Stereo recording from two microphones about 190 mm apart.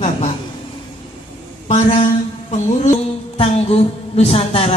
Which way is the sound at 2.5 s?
35° left (ahead or behind).